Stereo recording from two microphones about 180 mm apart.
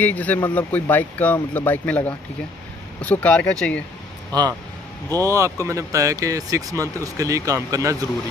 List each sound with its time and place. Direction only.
0.0 s speech: 10° left (ahead or behind)
4.3 s speech: 20° right (ahead or behind)